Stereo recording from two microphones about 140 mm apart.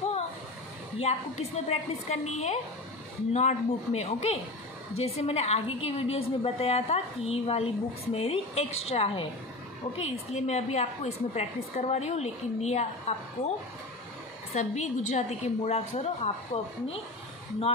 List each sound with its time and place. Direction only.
0.9 s a woman's voice: 50° left (ahead or behind)
14.5 s a woman's voice: 55° left (ahead or behind)